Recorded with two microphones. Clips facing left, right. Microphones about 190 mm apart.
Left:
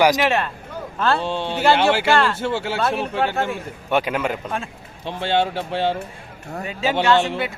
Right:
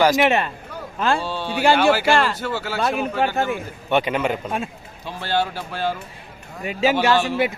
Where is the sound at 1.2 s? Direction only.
25° left (ahead or behind).